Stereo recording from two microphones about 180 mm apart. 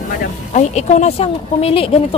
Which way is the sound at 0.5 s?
40° left (ahead or behind).